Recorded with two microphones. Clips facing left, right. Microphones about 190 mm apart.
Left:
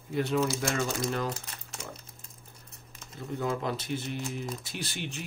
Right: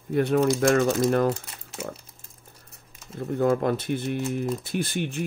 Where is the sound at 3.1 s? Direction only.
55° right (ahead or behind).